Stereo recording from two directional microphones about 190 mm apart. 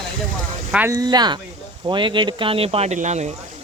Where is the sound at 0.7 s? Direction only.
10° right (ahead or behind).